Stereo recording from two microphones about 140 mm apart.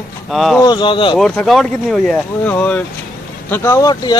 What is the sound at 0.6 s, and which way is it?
Speech, 30° left (ahead or behind).